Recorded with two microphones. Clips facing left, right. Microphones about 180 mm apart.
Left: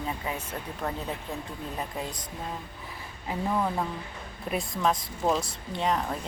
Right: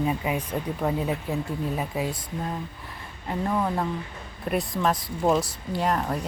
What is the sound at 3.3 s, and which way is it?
Speech, centre (ahead or behind).